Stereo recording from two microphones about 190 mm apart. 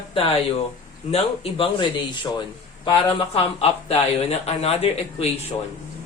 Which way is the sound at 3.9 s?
35° left (ahead or behind).